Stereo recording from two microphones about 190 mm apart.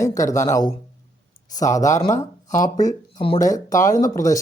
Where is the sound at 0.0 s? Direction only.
15° left (ahead or behind).